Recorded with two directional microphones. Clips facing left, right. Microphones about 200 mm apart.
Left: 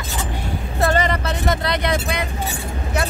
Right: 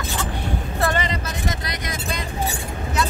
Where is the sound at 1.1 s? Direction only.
60° left (ahead or behind).